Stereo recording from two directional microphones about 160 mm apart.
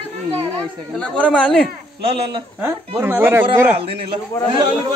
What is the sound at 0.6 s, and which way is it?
Speech, 5° left (ahead or behind).